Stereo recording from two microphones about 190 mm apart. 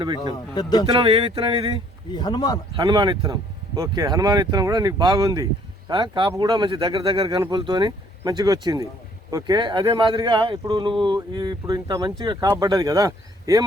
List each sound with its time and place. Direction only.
0.5 s speech: 20° left (ahead or behind)
0.9 s speech: 25° right (ahead or behind)
2.1 s speech: 20° left (ahead or behind)
2.7 s speech: 25° right (ahead or behind)